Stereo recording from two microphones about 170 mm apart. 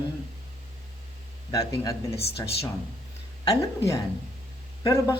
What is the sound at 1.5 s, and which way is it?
Speech, 20° left (ahead or behind).